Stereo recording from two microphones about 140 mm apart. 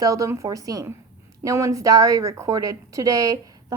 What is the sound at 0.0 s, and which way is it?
A woman's voice, 25° right (ahead or behind).